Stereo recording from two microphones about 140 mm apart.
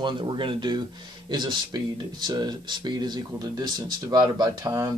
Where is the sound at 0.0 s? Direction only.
35° right (ahead or behind).